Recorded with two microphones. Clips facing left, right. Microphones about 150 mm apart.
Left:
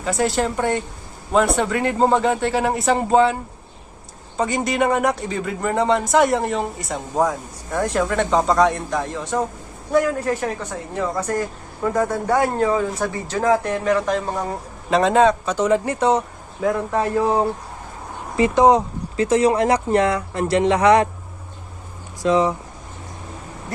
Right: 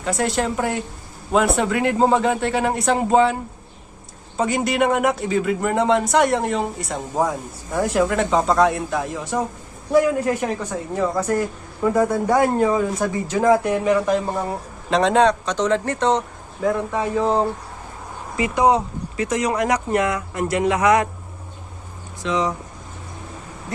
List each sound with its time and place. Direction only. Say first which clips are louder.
0.0 s speech: left 1 dB; centre (ahead or behind)
4.4 s a woman's voice: right 1 dB; centre (ahead or behind)
18.3 s speech: left 3 dB; 30° left (ahead or behind)
22.3 s speech: left 4 dB; 35° left (ahead or behind)